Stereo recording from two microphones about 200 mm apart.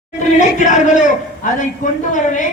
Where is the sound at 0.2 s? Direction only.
35° left (ahead or behind).